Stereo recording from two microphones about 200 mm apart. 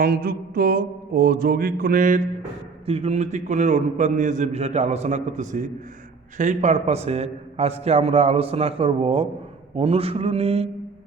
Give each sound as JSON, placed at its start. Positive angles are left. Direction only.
{"t": 0.0, "sound": "mantra", "side_deg": -50}
{"t": 2.8, "sound": "a man's voice", "side_deg": -30}